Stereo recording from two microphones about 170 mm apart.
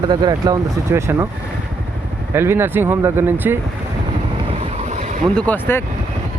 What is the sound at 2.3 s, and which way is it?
Speech, 15° right (ahead or behind).